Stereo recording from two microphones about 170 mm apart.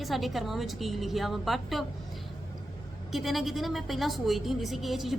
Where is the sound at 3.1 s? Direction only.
Centre (ahead or behind).